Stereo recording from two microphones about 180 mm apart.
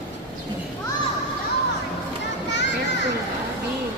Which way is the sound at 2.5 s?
75° left (ahead or behind).